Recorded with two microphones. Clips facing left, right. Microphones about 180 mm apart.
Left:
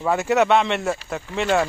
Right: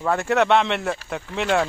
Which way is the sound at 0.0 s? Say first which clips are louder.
Left 1 dB; 5° left (ahead or behind).